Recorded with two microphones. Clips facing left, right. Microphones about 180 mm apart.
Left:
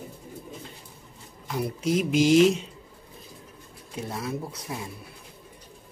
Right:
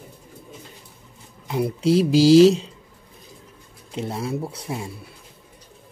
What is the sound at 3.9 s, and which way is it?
Speech, 25° right (ahead or behind).